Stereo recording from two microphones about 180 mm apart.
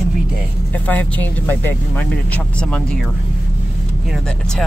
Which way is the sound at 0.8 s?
10° left (ahead or behind).